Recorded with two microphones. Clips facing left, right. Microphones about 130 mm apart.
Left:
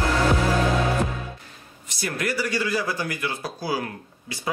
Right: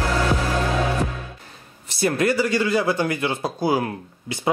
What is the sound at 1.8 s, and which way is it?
Speech, 25° right (ahead or behind).